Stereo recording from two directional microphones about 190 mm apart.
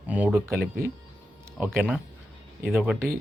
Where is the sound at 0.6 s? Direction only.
50° right (ahead or behind).